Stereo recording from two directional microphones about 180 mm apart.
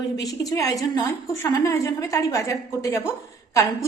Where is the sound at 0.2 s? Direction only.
20° left (ahead or behind).